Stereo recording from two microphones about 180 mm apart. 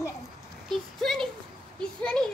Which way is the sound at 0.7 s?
Centre (ahead or behind).